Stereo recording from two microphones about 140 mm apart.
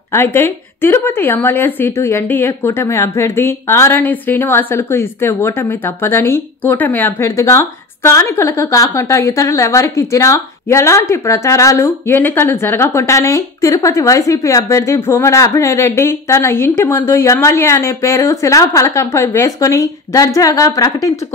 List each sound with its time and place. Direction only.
0.1 s speech: 15° left (ahead or behind)